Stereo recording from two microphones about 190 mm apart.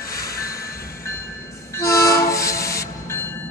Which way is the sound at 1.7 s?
15° left (ahead or behind).